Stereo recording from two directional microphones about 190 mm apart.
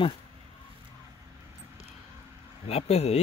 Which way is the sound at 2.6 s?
30° left (ahead or behind).